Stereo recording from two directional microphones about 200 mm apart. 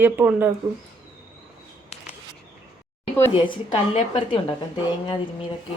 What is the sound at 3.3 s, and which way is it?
A woman's voice, 25° left (ahead or behind).